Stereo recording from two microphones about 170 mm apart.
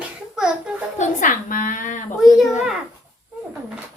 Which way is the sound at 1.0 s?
50° left (ahead or behind).